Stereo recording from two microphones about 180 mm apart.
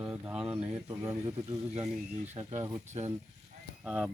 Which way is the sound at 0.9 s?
20° right (ahead or behind).